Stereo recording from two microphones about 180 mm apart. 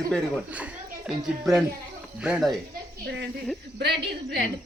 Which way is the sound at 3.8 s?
70° right (ahead or behind).